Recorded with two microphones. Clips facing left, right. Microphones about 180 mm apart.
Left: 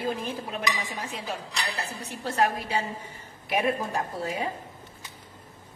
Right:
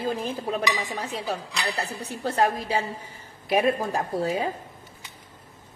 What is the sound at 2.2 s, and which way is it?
A woman's voice, 35° right (ahead or behind).